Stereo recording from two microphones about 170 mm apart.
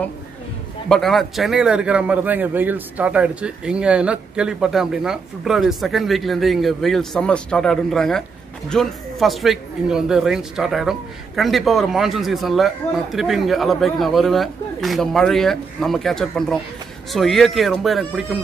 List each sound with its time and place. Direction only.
0.8 s speech: centre (ahead or behind)